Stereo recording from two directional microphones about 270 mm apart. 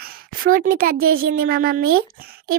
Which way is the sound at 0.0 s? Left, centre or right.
Right.